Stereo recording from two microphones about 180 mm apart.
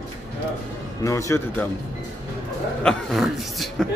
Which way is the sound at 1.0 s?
15° left (ahead or behind).